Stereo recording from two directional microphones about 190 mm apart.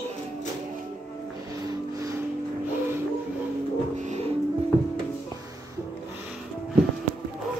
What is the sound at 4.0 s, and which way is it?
Music, 35° right (ahead or behind).